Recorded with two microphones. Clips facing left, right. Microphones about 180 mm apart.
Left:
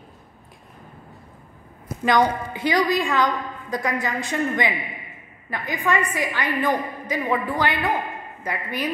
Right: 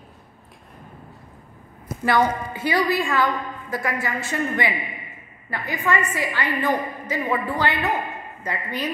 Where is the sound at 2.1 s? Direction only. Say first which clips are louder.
Left 1 dB; 15° left (ahead or behind).